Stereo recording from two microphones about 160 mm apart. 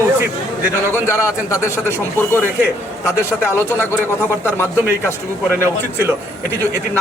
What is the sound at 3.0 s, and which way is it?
Speech, 15° left (ahead or behind).